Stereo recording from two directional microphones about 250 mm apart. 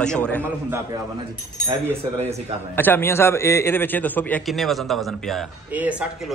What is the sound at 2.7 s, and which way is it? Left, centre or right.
A man's voice, centre.